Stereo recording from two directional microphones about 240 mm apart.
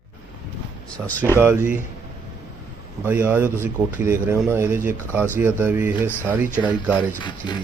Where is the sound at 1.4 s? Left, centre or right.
Centre.